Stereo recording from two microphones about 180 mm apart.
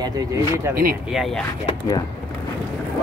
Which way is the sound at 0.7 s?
55° right (ahead or behind).